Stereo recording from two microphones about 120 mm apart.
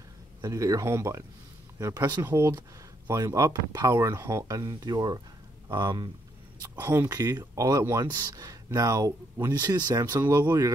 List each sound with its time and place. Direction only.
0.4 s speech: 30° right (ahead or behind)
6.7 s speech: 15° right (ahead or behind)
7.2 s speech: 30° right (ahead or behind)